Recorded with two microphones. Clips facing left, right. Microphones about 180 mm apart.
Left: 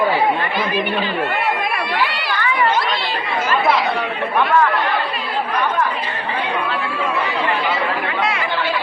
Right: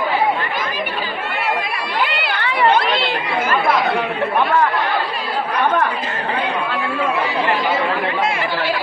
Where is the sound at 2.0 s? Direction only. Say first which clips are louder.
Even; 55° right (ahead or behind).